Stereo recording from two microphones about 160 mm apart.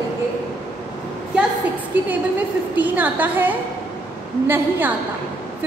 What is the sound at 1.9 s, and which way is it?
A woman's voice, 10° right (ahead or behind).